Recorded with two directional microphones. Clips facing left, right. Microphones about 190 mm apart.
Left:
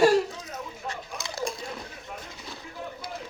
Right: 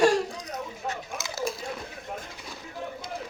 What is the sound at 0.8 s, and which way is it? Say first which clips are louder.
Biting: right 2 dB; 5° right (ahead or behind).